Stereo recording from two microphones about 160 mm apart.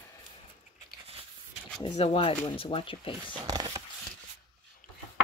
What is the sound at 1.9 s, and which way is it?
Speech, 40° left (ahead or behind).